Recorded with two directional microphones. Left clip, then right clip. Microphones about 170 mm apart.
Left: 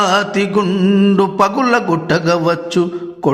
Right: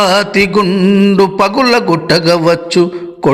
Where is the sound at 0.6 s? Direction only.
Centre (ahead or behind).